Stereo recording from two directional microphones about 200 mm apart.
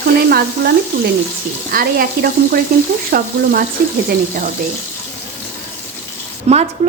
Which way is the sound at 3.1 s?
50° right (ahead or behind).